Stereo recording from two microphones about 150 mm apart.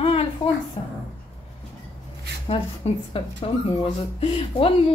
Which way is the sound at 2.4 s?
40° left (ahead or behind).